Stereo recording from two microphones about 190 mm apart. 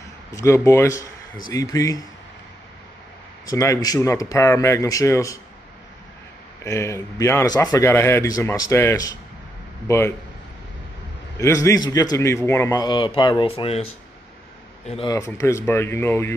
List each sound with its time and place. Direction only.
0.3 s a man's voice: 15° left (ahead or behind)
3.4 s a man's voice: 15° left (ahead or behind)
6.6 s a man's voice: 15° left (ahead or behind)
11.3 s a man's voice: 15° left (ahead or behind); by 13.8 s 30° left (ahead or behind)
15.0 s a man's voice: 15° left (ahead or behind)